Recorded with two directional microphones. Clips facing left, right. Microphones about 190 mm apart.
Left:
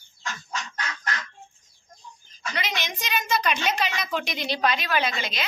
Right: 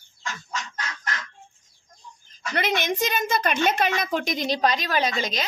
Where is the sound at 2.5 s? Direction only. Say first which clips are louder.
Right 8 dB; 55° right (ahead or behind).